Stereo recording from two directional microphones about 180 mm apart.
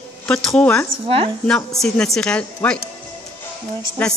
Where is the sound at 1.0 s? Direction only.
30° right (ahead or behind).